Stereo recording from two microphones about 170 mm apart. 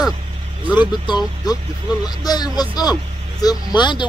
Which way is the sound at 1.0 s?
25° left (ahead or behind).